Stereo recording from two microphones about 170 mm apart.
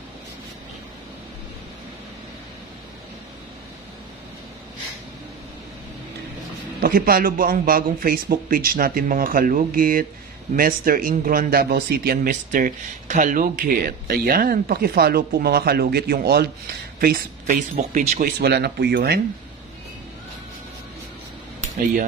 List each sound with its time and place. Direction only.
6.8 s speech: 60° right (ahead or behind)
17.7 s speech: 40° right (ahead or behind)
18.4 s speech: 70° right (ahead or behind)